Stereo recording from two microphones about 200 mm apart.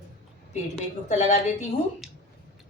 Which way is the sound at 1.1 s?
35° left (ahead or behind).